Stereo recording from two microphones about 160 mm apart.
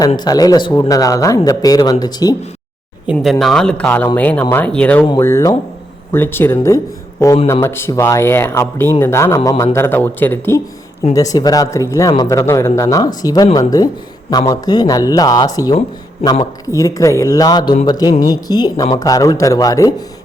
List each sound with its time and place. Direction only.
0.2 s speech: 25° left (ahead or behind)
3.1 s speech: centre (ahead or behind)
5.2 s speech: 20° left (ahead or behind)